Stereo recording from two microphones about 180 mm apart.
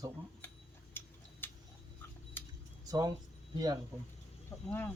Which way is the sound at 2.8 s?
20° right (ahead or behind).